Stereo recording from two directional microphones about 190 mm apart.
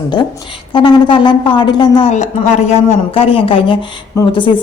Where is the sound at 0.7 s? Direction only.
25° left (ahead or behind).